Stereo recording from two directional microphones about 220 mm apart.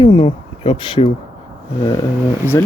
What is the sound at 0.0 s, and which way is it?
Speech, 25° left (ahead or behind).